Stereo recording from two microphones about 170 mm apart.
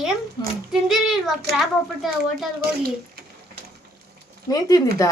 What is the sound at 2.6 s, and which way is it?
Speech, 65° right (ahead or behind).